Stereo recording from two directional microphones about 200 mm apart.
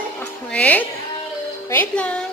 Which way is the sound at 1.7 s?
10° left (ahead or behind).